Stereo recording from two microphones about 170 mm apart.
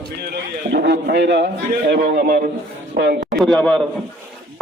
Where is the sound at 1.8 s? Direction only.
65° right (ahead or behind).